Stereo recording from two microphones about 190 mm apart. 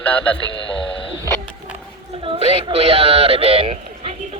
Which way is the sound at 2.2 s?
30° right (ahead or behind).